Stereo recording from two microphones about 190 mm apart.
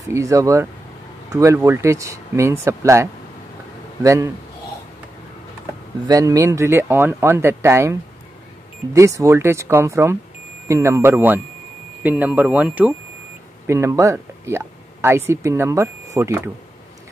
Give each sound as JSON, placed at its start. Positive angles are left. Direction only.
{"t": 0.1, "sound": "speech", "side_deg": -15}
{"t": 6.0, "sound": "speech", "side_deg": -15}